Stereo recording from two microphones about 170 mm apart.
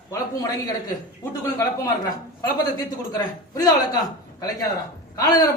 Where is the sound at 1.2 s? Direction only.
15° left (ahead or behind).